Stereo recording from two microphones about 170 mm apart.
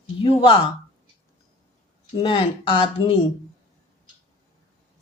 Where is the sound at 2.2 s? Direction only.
30° left (ahead or behind).